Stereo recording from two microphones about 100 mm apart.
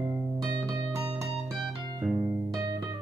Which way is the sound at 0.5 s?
40° right (ahead or behind).